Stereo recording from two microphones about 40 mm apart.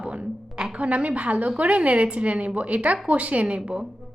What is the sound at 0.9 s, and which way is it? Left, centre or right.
A woman's voice, right.